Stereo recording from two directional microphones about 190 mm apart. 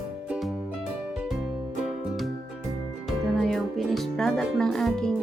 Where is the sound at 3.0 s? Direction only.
Centre (ahead or behind).